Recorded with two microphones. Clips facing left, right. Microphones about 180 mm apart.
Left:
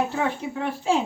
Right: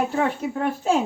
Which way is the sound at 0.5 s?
45° right (ahead or behind).